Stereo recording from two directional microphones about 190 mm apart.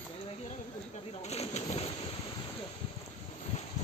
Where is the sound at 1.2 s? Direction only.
35° left (ahead or behind).